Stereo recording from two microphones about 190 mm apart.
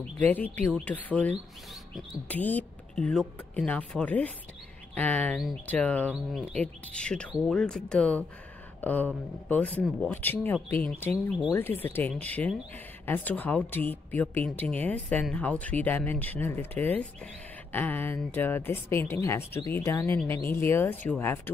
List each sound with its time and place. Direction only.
0.2 s speech: 10° left (ahead or behind)